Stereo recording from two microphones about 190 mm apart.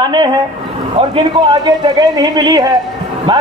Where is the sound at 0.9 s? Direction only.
25° right (ahead or behind).